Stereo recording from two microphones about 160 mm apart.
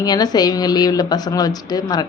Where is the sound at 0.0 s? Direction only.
25° left (ahead or behind).